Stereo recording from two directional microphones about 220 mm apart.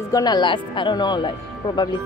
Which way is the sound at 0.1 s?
20° left (ahead or behind).